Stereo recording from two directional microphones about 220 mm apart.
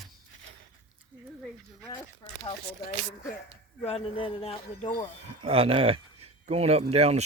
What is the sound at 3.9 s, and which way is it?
Speech, 25° left (ahead or behind).